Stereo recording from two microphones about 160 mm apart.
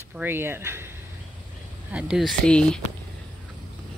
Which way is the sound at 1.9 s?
5° right (ahead or behind).